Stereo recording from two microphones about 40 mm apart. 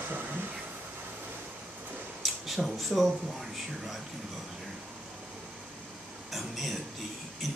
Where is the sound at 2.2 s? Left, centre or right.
Centre.